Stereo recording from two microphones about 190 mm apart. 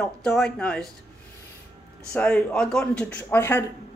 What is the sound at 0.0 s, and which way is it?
Speech, 5° left (ahead or behind).